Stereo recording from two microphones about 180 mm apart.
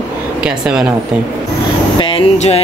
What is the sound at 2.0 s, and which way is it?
Speech, 35° left (ahead or behind).